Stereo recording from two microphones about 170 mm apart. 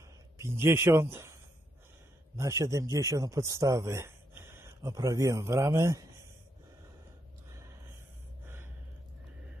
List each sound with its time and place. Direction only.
0.4 s a man's voice: 15° right (ahead or behind)